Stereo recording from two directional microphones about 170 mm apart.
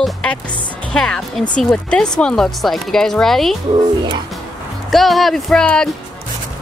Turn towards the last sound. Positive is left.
turn(degrees=5)  # may be behind; listen again after turning